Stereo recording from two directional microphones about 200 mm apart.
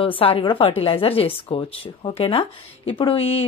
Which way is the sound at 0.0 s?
30° left (ahead or behind).